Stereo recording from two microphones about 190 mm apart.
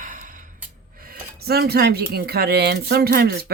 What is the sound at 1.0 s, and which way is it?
Speech, 50° right (ahead or behind).